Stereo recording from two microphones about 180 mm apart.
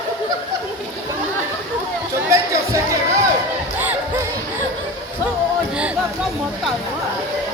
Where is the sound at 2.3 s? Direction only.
15° right (ahead or behind).